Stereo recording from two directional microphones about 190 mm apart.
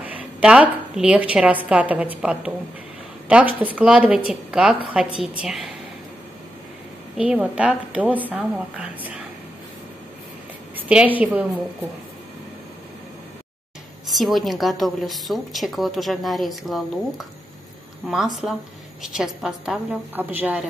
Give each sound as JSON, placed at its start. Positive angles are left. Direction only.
{"t": 0.0, "sound": "a woman's voice", "side_deg": -5}
{"t": 7.2, "sound": "a woman's voice", "side_deg": -5}
{"t": 10.8, "sound": "a woman's voice", "side_deg": -5}
{"t": 14.0, "sound": "a woman's voice", "side_deg": 0}